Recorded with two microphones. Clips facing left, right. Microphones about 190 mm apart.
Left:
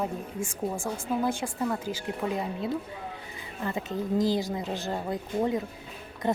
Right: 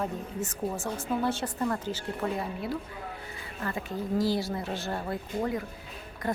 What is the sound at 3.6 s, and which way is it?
Speech, 20° left (ahead or behind).